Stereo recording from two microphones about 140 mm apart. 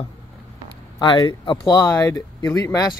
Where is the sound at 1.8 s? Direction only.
20° left (ahead or behind).